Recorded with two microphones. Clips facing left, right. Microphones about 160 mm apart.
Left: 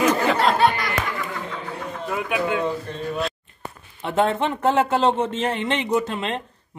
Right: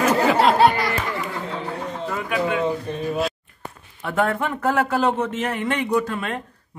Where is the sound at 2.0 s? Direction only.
15° left (ahead or behind).